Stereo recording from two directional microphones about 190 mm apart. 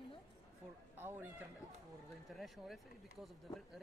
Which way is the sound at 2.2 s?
Centre (ahead or behind).